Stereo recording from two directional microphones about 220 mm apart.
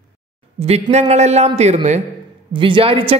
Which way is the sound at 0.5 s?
25° right (ahead or behind).